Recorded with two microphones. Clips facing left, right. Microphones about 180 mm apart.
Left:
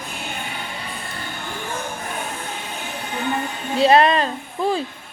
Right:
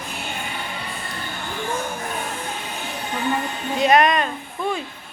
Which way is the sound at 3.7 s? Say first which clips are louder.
Left 2 dB; 30° left (ahead or behind).